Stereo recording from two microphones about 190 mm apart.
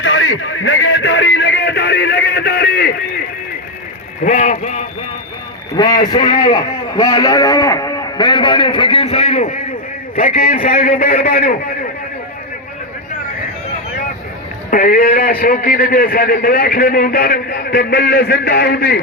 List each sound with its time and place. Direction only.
0.0 s a sound: 85° left; by 2.9 s 55° left (ahead or behind)
4.2 s a man's voice: 40° left (ahead or behind)
5.7 s a man's voice: 20° left (ahead or behind)
6.1 s a man's voice: 35° left (ahead or behind)
6.5 s a man's voice: 20° left (ahead or behind); by 11.5 s 50° left (ahead or behind)
14.7 s a man's voice: 45° left (ahead or behind)